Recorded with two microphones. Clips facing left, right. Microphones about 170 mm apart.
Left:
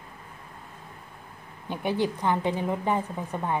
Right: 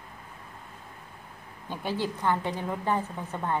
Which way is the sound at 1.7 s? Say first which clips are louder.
Left 4 dB; 15° left (ahead or behind).